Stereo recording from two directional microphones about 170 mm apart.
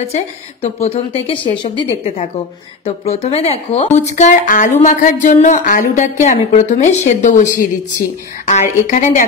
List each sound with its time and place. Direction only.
0.1 s a woman's voice: 35° left (ahead or behind)